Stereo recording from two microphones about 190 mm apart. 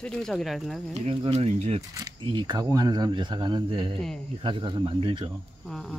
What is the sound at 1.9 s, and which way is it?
Speech, 20° right (ahead or behind).